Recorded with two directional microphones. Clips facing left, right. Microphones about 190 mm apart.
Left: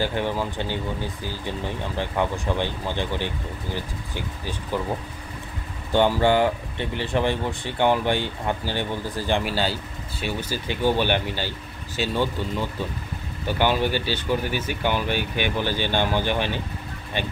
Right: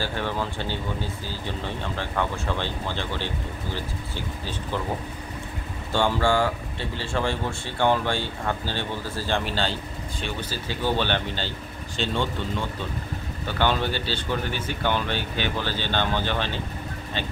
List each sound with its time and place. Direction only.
0.0 s speech: 15° left (ahead or behind)
5.9 s speech: 15° left (ahead or behind)
13.5 s speech: 10° left (ahead or behind)